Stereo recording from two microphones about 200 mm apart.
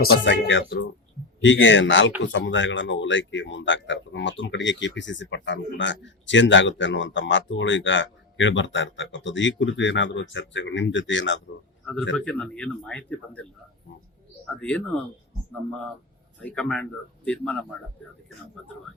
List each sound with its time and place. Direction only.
0.0 s speech: 55° left (ahead or behind)
12.1 s speech: 5° left (ahead or behind)
14.5 s speech: 5° left (ahead or behind)
16.4 s speech: 5° left (ahead or behind)